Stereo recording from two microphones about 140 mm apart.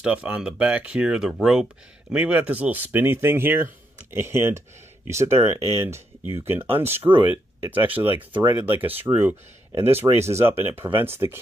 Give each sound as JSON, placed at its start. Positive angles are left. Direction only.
{"t": 0.0, "sound": "speech", "side_deg": -10}